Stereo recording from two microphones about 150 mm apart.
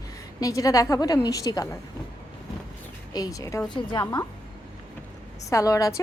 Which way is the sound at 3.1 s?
25° left (ahead or behind).